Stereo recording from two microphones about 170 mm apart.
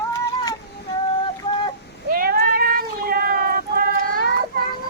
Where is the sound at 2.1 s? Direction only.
60° right (ahead or behind).